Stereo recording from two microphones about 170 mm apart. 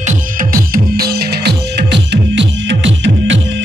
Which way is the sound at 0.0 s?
55° right (ahead or behind).